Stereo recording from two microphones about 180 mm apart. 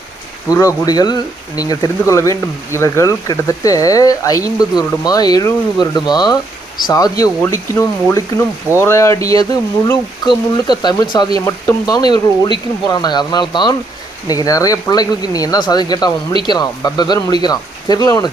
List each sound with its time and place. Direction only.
0.4 s speech: 20° left (ahead or behind)